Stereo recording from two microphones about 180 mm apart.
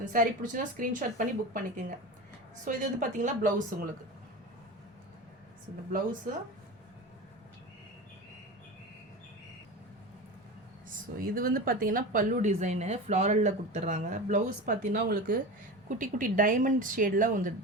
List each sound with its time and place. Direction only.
0.1 s speech: 45° right (ahead or behind)
10.8 s speech: 50° right (ahead or behind)